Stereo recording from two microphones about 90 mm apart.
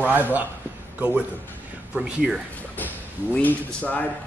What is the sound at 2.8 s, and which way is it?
Speech, 20° left (ahead or behind).